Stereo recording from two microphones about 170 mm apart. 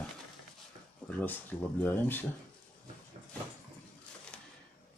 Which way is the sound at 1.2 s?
10° left (ahead or behind).